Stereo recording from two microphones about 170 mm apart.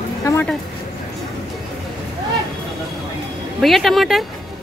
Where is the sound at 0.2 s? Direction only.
20° left (ahead or behind).